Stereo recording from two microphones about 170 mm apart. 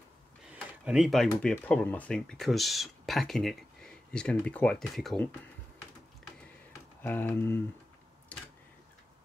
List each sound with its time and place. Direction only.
0.5 s speech: 5° right (ahead or behind)
7.0 s speech: 10° left (ahead or behind)